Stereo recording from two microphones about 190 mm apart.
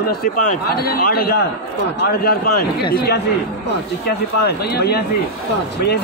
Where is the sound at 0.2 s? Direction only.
50° left (ahead or behind).